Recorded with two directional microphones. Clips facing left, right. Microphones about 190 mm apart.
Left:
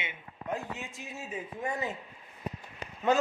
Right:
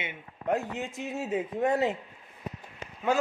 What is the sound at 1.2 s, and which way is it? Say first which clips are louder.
Speech: right 10 dB; 75° right (ahead or behind).